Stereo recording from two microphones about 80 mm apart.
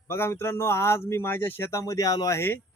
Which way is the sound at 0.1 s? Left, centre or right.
Left.